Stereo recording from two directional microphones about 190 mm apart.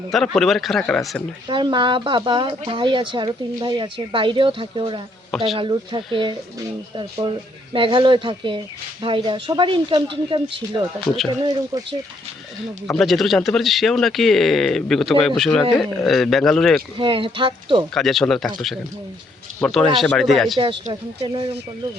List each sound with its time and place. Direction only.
0.1 s a man's voice: centre (ahead or behind)
1.5 s speech: 25° right (ahead or behind)
12.9 s a man's voice: centre (ahead or behind)
17.0 s speech: 25° right (ahead or behind)
17.9 s a man's voice: centre (ahead or behind)
19.6 s a man's voice: 5° left (ahead or behind)
21.2 s speech: 35° right (ahead or behind)